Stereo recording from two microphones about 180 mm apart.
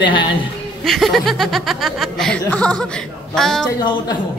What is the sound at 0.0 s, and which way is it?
Speech, 25° left (ahead or behind).